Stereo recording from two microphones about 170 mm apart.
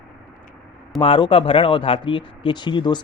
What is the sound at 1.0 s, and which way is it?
Speech, 30° left (ahead or behind).